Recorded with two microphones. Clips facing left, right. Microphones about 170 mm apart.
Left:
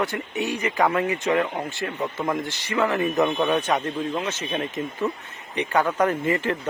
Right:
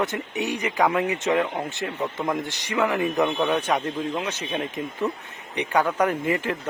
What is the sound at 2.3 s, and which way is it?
Speech, 15° right (ahead or behind).